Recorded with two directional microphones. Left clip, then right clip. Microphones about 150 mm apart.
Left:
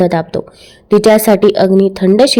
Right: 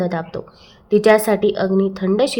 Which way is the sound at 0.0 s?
40° left (ahead or behind).